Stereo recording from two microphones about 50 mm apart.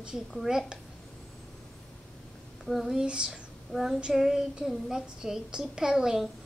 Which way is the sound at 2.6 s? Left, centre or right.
Centre.